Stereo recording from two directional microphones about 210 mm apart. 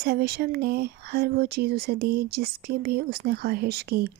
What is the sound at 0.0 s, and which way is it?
Speech, 50° right (ahead or behind).